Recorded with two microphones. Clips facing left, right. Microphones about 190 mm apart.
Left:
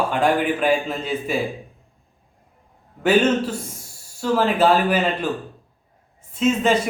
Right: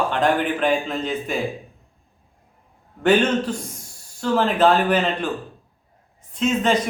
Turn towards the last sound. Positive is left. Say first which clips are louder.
# left 1 dB
turn(degrees=5)  # may be behind; listen again after turning